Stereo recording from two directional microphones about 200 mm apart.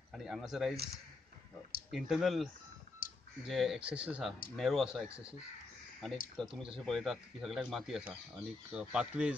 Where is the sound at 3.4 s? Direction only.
Centre (ahead or behind).